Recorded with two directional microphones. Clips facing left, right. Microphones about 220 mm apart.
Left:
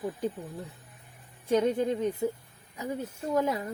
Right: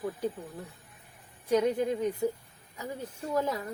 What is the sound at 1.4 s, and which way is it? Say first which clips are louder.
Speech: left 1 dB; 25° left (ahead or behind).